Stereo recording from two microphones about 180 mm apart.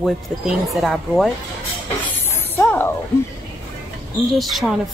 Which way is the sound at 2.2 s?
10° left (ahead or behind).